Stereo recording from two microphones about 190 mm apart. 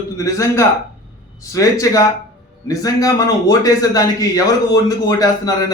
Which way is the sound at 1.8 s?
15° left (ahead or behind).